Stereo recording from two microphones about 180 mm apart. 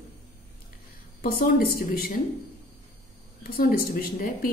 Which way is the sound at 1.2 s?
55° left (ahead or behind).